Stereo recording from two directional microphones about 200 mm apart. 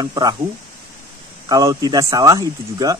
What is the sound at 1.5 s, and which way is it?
Speech, 15° right (ahead or behind).